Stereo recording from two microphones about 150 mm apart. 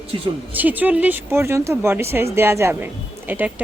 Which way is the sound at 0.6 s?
10° right (ahead or behind).